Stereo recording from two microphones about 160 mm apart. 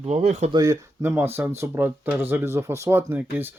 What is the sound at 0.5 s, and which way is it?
Speech, 20° right (ahead or behind).